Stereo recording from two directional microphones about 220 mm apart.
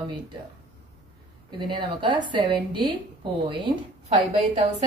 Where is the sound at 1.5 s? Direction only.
20° right (ahead or behind).